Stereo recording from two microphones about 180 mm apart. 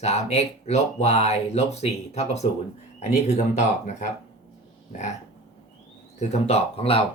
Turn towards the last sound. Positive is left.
turn(degrees=30)  # may be behind; listen again after turning